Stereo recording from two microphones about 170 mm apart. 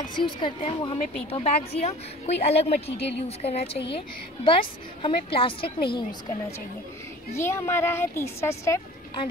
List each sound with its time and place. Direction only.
0.1 s a woman's voice: 30° left (ahead or behind)
7.3 s a woman's voice: 15° left (ahead or behind)